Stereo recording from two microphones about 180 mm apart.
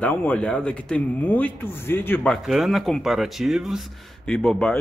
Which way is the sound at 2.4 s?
Centre (ahead or behind).